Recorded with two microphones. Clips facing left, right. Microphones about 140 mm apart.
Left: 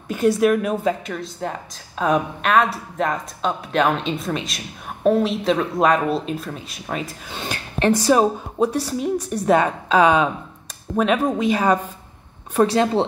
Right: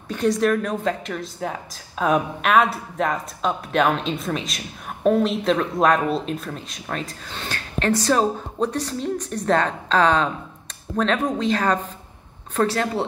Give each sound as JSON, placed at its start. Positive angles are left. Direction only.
{"t": 0.1, "sound": "a woman's voice", "side_deg": 10}